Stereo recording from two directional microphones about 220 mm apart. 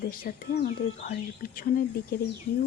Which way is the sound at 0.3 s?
40° left (ahead or behind).